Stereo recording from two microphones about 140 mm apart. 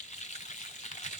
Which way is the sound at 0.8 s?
55° left (ahead or behind).